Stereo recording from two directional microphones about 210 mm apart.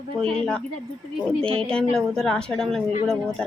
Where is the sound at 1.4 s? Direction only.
25° right (ahead or behind).